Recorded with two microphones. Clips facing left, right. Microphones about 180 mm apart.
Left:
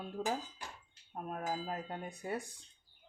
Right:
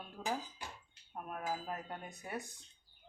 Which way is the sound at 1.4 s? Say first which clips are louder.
Left 1 dB; 25° left (ahead or behind).